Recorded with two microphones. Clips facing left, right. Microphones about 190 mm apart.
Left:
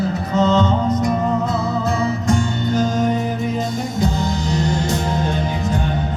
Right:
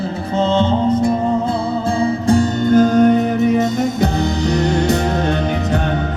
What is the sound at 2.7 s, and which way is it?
Music, 55° right (ahead or behind).